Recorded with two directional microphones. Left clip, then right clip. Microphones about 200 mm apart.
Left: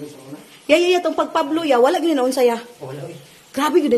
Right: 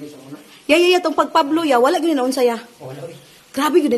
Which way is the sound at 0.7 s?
15° right (ahead or behind).